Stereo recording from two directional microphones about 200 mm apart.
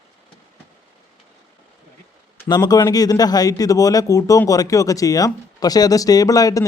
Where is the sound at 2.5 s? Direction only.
20° left (ahead or behind).